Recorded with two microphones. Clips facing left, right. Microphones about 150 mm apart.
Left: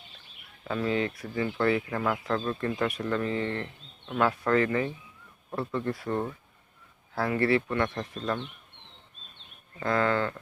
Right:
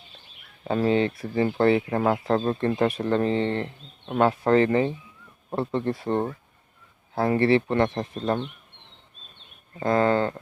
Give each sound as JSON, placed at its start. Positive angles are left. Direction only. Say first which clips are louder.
{"t": 0.6, "sound": "speech", "louder": "right 6 dB", "side_deg": -35}
{"t": 9.8, "sound": "speech", "louder": "right 5 dB", "side_deg": -25}